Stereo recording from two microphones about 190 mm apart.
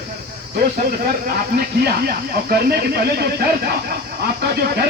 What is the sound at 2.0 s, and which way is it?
Speech, 55° right (ahead or behind).